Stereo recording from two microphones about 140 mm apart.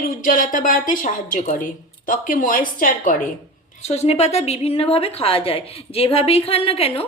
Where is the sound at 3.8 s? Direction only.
50° left (ahead or behind).